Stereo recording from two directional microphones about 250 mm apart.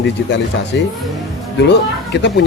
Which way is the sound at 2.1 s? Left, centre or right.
Left.